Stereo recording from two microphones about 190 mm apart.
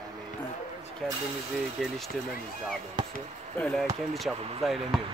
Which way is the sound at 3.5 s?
5° left (ahead or behind).